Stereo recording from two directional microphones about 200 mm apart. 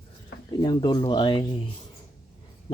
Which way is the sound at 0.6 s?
20° left (ahead or behind).